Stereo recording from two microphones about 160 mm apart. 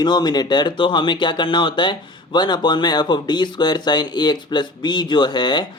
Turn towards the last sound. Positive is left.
turn(degrees=30)  # may be behind; listen again after turning